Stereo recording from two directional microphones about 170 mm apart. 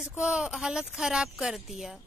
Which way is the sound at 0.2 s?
5° right (ahead or behind).